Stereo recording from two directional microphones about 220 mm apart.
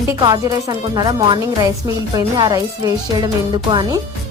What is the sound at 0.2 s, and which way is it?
Speech, 20° right (ahead or behind).